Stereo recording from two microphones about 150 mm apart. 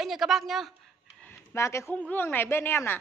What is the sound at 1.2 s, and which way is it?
Speech, 15° left (ahead or behind).